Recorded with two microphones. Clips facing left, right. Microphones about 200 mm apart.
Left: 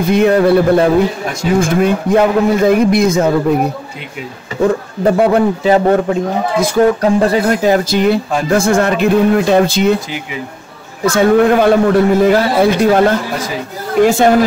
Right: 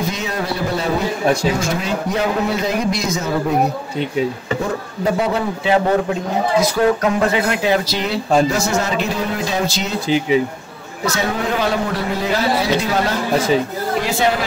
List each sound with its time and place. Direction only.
0.1 s a man's voice: 55° left (ahead or behind)
5.0 s a man's voice: 55° left (ahead or behind)
7.0 s speech: 35° left (ahead or behind); by 9.9 s 55° left (ahead or behind)
11.1 s speech: 55° left (ahead or behind)